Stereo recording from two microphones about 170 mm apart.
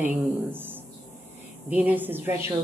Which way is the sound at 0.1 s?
10° right (ahead or behind).